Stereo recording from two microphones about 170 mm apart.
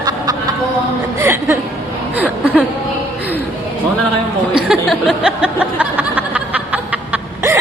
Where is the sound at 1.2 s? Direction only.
15° right (ahead or behind).